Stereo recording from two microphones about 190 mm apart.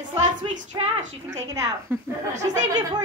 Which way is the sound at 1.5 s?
15° right (ahead or behind).